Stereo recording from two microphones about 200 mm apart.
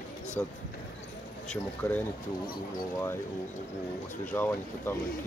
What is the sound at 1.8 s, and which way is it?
Speech, 15° left (ahead or behind).